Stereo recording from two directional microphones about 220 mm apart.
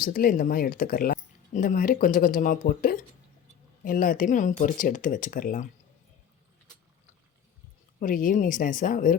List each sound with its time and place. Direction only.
0.0 s speech: 40° left (ahead or behind)
7.9 s speech: 35° left (ahead or behind)